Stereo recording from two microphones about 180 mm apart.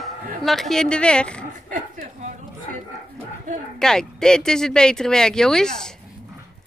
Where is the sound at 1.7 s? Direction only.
45° right (ahead or behind).